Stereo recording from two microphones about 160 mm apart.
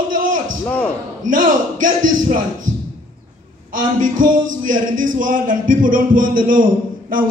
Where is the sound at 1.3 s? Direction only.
55° right (ahead or behind).